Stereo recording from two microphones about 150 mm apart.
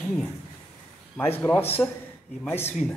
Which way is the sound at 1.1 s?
15° left (ahead or behind).